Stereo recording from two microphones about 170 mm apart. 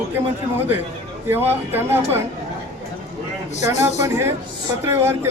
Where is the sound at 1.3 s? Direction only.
10° right (ahead or behind).